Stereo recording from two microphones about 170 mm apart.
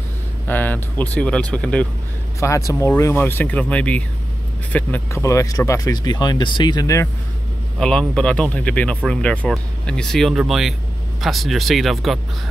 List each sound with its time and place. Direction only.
0.5 s speech: 10° left (ahead or behind)
2.4 s speech: 15° left (ahead or behind)
7.8 s speech: 5° left (ahead or behind)